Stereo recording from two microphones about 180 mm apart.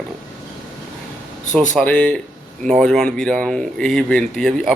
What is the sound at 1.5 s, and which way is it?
Speech, 5° left (ahead or behind).